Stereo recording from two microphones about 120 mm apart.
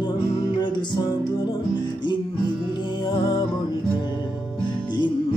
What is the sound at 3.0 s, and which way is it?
Music, 50° left (ahead or behind).